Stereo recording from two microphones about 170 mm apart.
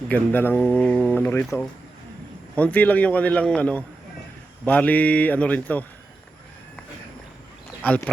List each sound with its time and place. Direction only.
0.1 s speech: 10° left (ahead or behind)
2.6 s speech: 10° left (ahead or behind)
7.8 s speech: 10° left (ahead or behind)